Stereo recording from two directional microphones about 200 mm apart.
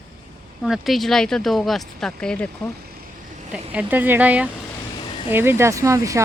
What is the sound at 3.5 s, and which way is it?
Speech, 5° right (ahead or behind).